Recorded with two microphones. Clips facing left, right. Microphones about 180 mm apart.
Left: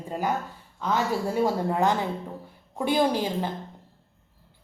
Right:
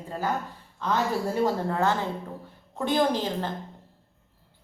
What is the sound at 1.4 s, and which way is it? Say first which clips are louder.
Speech: left 2 dB; 15° left (ahead or behind).